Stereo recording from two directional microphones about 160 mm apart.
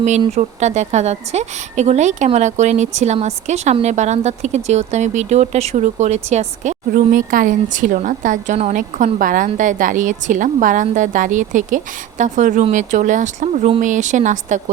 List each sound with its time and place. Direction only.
0.3 s a woman's voice: 45° right (ahead or behind)